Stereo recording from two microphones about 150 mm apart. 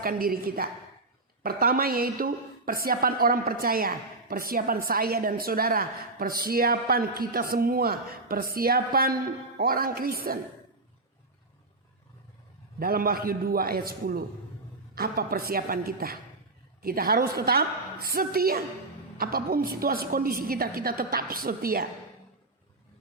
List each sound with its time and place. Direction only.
0.0 s a woman's voice: 75° right (ahead or behind)
12.8 s a woman's voice: 75° right (ahead or behind)